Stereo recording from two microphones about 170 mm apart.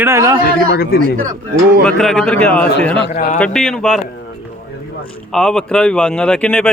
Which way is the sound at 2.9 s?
75° left (ahead or behind).